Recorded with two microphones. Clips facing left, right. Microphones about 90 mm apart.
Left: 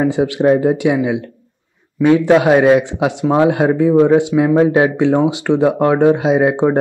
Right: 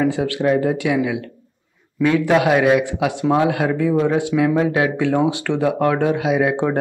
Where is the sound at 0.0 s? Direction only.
20° left (ahead or behind).